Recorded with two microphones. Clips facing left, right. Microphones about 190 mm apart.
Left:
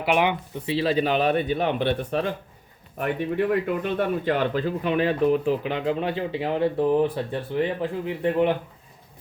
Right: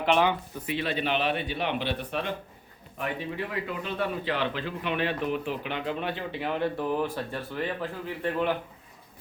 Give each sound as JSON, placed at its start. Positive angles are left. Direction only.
{"t": 0.0, "sound": "speech", "side_deg": 15}
{"t": 0.7, "sound": "speech", "side_deg": 35}
{"t": 3.0, "sound": "speech", "side_deg": 55}